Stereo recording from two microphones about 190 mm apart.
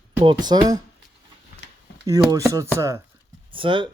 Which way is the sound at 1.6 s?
65° left (ahead or behind).